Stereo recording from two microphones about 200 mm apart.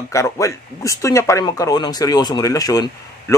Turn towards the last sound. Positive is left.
turn(degrees=15)  # may be behind; listen again after turning